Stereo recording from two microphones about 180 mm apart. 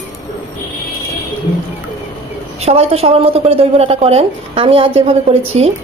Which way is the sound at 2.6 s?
35° right (ahead or behind).